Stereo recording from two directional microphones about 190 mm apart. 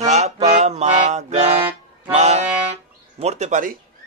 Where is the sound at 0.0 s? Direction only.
35° right (ahead or behind).